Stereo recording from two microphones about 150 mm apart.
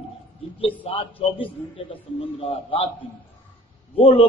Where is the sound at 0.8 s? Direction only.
40° left (ahead or behind).